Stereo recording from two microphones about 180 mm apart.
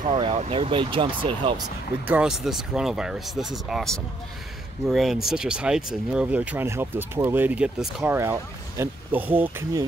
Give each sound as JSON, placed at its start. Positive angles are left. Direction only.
{"t": 0.1, "sound": "speech", "side_deg": -35}
{"t": 2.0, "sound": "speech", "side_deg": -5}